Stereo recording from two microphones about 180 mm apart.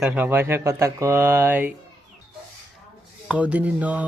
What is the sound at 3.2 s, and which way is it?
Speech, 10° right (ahead or behind).